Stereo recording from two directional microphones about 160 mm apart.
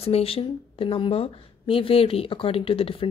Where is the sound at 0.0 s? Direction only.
40° left (ahead or behind).